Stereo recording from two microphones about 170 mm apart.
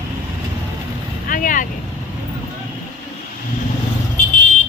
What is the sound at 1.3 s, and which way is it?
Speech, 50° left (ahead or behind).